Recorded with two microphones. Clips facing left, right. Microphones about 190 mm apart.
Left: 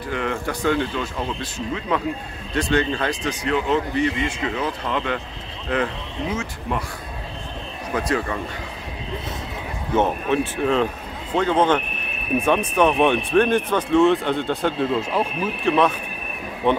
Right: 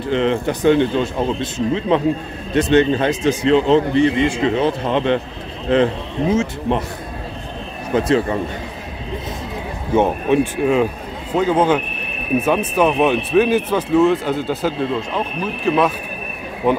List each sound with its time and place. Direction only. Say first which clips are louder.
0.0 s speech: right 8 dB; 25° right (ahead or behind)
7.9 s speech: right 7 dB; 25° right (ahead or behind)
9.9 s speech: right 5 dB; 15° right (ahead or behind)